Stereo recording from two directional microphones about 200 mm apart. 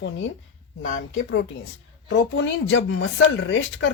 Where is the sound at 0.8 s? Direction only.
40° left (ahead or behind).